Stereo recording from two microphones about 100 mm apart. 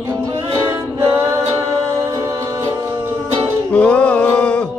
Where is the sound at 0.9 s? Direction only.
30° right (ahead or behind).